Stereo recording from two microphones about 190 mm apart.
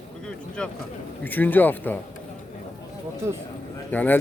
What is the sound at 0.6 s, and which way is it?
Speech, 5° left (ahead or behind).